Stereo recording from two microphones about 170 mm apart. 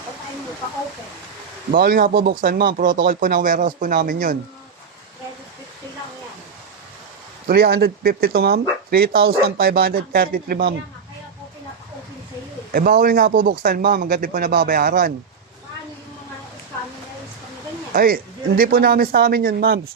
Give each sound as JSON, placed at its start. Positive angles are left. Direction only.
{"t": 1.7, "sound": "speech", "side_deg": -60}
{"t": 7.4, "sound": "speech", "side_deg": -65}
{"t": 12.7, "sound": "speech", "side_deg": -60}
{"t": 17.9, "sound": "speech", "side_deg": -60}